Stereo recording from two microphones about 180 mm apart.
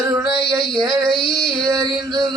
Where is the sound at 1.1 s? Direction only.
25° left (ahead or behind).